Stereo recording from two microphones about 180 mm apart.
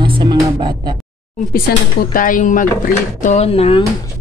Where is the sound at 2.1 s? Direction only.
45° left (ahead or behind).